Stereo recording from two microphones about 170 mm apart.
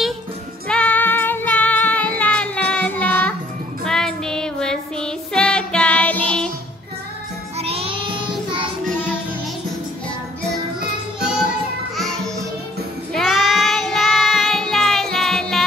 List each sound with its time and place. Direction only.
0.7 s music: 5° left (ahead or behind)
3.8 s child singing: 5° left (ahead or behind)
7.5 s music: 35° right (ahead or behind)
13.1 s child singing: centre (ahead or behind)